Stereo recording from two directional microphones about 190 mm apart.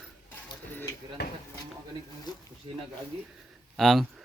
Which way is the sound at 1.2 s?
60° left (ahead or behind).